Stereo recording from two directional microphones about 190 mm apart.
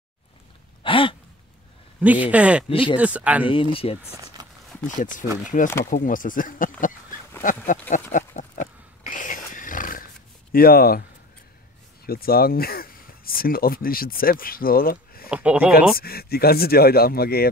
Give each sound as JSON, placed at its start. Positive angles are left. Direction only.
{"t": 0.8, "sound": "a sound", "side_deg": 25}
{"t": 2.0, "sound": "speech", "side_deg": -10}
{"t": 2.7, "sound": "speech", "side_deg": 25}
{"t": 3.0, "sound": "speech", "side_deg": -5}
{"t": 3.7, "sound": "speech", "side_deg": 30}
{"t": 4.4, "sound": "a sound", "side_deg": -20}
{"t": 4.8, "sound": "speech", "side_deg": 45}
{"t": 8.1, "sound": "roaring cats", "side_deg": 40}
{"t": 10.5, "sound": "speech", "side_deg": 50}
{"t": 12.1, "sound": "speech", "side_deg": 50}
{"t": 15.2, "sound": "speech", "side_deg": -5}
{"t": 16.0, "sound": "speech", "side_deg": 55}